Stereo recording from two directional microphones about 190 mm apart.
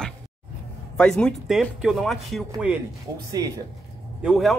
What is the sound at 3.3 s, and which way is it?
Speech, 20° right (ahead or behind).